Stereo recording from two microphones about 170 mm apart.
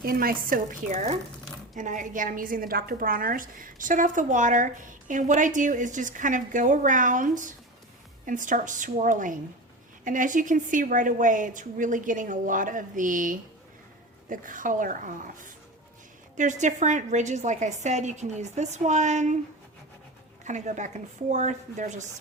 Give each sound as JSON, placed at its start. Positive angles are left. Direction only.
{"t": 0.0, "sound": "speech", "side_deg": -60}
{"t": 0.9, "sound": "a woman's voice", "side_deg": -40}
{"t": 20.4, "sound": "a woman's voice", "side_deg": -45}